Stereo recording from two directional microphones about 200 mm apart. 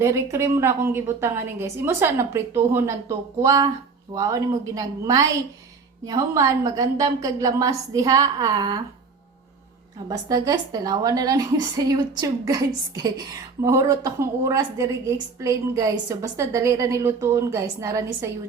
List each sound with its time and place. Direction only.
0.0 s a woman's voice: 15° right (ahead or behind)
10.1 s a woman's voice: 15° right (ahead or behind)